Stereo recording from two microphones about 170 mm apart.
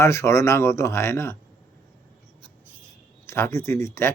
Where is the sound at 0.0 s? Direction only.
15° left (ahead or behind).